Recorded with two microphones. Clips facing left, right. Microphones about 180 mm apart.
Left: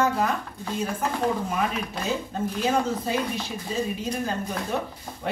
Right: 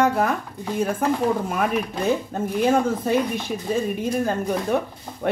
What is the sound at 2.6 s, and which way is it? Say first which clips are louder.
A woman's voice: right 5 dB; 55° right (ahead or behind).